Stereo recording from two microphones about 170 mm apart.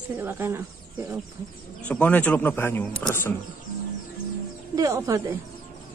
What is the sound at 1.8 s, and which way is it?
Speech, 10° left (ahead or behind).